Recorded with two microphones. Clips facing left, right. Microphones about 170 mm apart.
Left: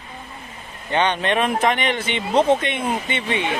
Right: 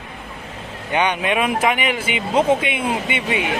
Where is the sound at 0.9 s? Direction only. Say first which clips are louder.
Even; 10° right (ahead or behind).